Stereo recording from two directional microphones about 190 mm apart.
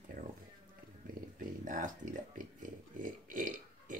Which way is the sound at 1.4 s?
45° right (ahead or behind).